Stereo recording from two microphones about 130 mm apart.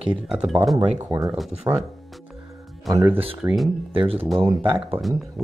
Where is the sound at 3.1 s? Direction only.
45° right (ahead or behind).